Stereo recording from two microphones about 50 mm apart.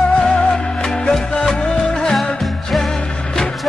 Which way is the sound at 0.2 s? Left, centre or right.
Centre.